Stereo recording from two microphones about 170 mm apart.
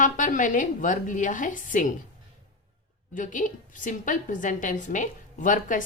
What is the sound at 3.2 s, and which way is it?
A woman's voice, 50° left (ahead or behind).